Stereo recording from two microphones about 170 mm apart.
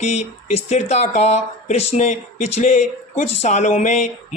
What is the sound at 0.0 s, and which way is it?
Speech, 40° left (ahead or behind).